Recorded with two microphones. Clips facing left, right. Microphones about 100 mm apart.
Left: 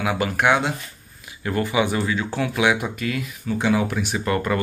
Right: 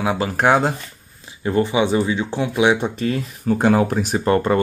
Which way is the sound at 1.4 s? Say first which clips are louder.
Right 4 dB; 25° right (ahead or behind).